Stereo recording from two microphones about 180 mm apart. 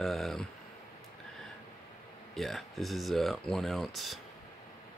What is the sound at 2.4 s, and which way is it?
Speech, centre (ahead or behind).